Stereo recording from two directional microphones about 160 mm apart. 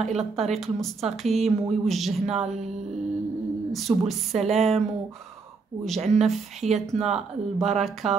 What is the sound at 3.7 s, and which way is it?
Speech, centre (ahead or behind).